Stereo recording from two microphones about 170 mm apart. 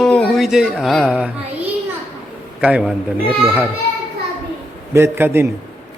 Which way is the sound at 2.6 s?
5° right (ahead or behind).